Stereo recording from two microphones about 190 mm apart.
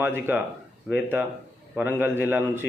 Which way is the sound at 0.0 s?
10° right (ahead or behind).